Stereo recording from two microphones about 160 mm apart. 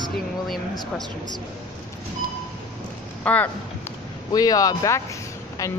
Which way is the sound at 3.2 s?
10° left (ahead or behind).